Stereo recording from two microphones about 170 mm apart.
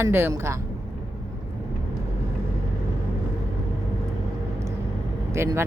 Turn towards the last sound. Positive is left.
turn(degrees=-15)  # may be behind; listen again after turning